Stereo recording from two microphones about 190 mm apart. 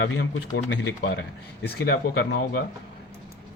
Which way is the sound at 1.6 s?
55° left (ahead or behind).